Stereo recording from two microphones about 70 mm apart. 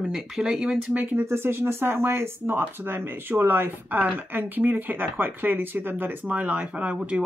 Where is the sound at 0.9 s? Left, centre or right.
Right.